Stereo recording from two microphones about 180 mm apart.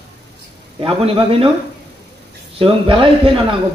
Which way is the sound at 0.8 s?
30° right (ahead or behind).